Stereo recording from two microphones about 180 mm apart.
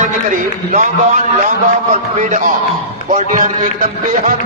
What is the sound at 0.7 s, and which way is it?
Speech, 45° right (ahead or behind).